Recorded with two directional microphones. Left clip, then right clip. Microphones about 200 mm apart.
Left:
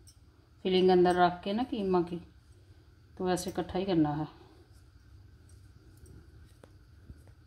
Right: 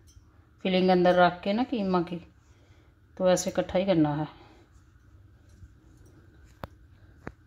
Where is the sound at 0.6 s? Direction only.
35° right (ahead or behind).